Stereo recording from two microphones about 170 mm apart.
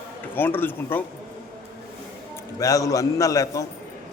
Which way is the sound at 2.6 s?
20° left (ahead or behind).